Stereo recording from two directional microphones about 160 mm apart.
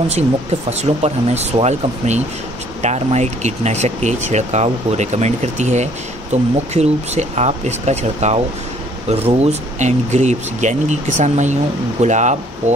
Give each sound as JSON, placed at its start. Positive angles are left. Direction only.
{"t": 0.1, "sound": "speech", "side_deg": -45}